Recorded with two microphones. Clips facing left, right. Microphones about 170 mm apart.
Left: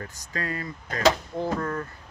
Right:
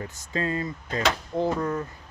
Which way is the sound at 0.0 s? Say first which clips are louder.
Right 4 dB; 25° right (ahead or behind).